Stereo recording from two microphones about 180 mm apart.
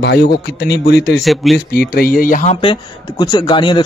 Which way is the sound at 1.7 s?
55° left (ahead or behind).